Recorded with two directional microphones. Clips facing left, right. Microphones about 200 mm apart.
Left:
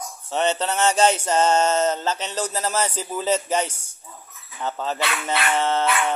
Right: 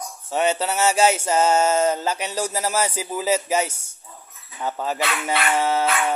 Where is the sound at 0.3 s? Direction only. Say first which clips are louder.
Right 1 dB; 10° right (ahead or behind).